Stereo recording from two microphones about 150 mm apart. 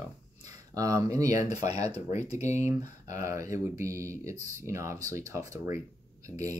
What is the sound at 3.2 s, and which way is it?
Speech, 20° right (ahead or behind).